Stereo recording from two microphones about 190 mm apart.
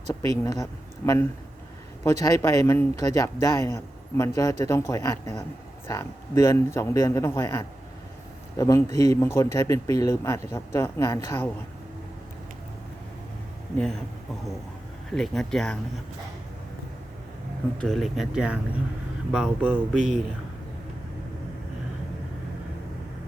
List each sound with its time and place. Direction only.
0.1 s speech: 15° left (ahead or behind)
2.2 s speech: 15° left (ahead or behind)
15.1 s speech: centre (ahead or behind)
17.7 s speech: centre (ahead or behind)